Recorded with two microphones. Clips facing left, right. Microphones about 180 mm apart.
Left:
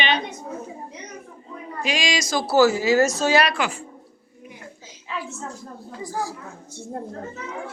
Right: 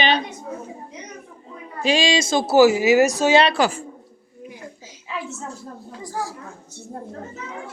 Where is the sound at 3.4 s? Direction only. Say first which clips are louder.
Right 4 dB; 30° right (ahead or behind).